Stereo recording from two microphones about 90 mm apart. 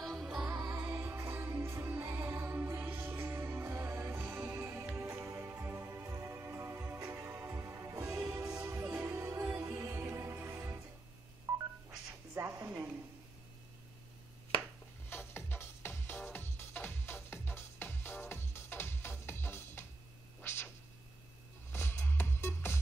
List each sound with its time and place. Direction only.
0.0 s music: centre (ahead or behind)
0.7 s music: 25° right (ahead or behind); by 8.8 s 40° right (ahead or behind)
8.8 s music: 25° right (ahead or behind)
11.5 s telephone dialing: 35° right (ahead or behind)
12.4 s music: 30° right (ahead or behind)
15.0 s music: 25° left (ahead or behind)
20.4 s a sound: 25° left (ahead or behind)
21.7 s music: 30° left (ahead or behind)